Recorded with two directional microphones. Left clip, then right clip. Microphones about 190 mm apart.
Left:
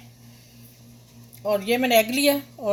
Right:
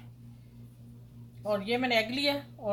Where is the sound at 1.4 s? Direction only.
50° left (ahead or behind).